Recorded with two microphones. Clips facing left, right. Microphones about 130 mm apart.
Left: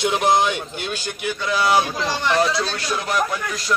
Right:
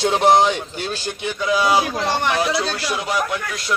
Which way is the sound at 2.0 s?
60° right (ahead or behind).